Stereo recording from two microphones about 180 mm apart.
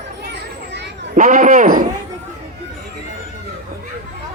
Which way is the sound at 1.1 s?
45° right (ahead or behind).